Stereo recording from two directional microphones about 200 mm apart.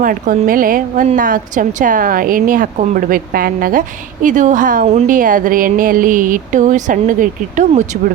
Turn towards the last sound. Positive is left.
turn(degrees=-40)  # may be behind; listen again after turning